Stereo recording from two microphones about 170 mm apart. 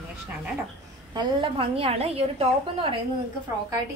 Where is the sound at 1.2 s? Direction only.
30° right (ahead or behind).